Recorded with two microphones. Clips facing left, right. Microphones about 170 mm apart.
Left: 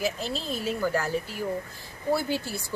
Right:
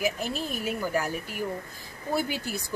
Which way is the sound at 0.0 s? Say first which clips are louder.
Right 1 dB; 15° right (ahead or behind).